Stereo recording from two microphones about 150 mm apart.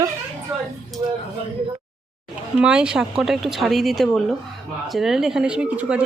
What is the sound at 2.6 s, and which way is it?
Speech, 5° right (ahead or behind).